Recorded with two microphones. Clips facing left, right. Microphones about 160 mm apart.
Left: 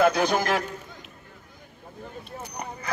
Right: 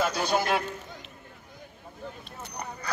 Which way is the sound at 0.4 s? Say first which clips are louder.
Left 2 dB; 90° left.